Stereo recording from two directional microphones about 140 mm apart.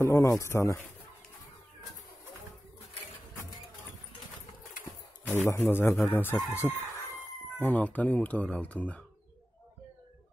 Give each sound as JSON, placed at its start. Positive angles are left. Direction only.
{"t": 0.0, "sound": "speech", "side_deg": 20}
{"t": 5.3, "sound": "speech", "side_deg": 15}
{"t": 6.5, "sound": "chicken", "side_deg": 20}
{"t": 7.5, "sound": "speech", "side_deg": 10}